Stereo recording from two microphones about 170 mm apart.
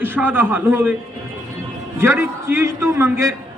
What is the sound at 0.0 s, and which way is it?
Speech, 10° right (ahead or behind).